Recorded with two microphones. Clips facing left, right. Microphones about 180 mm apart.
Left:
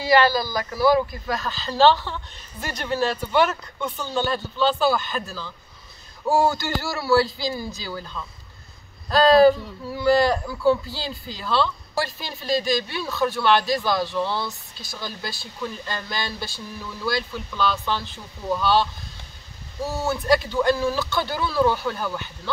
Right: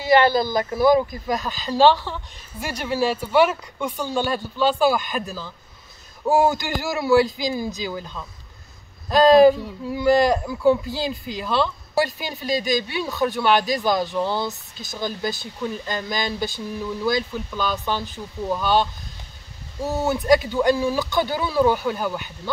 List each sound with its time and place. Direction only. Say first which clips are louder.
0.0 s speech: right 2 dB; 25° right (ahead or behind)
19.9 s speech: right 3 dB; 15° right (ahead or behind)